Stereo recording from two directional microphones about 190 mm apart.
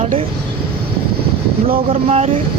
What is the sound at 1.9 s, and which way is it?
Speech, 30° right (ahead or behind).